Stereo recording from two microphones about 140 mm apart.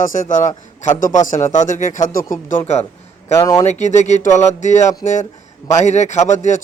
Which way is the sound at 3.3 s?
25° left (ahead or behind).